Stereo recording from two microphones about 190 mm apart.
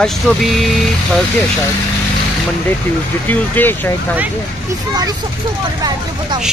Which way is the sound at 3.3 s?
10° left (ahead or behind).